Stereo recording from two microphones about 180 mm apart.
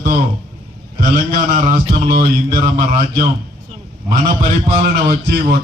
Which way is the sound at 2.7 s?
45° right (ahead or behind).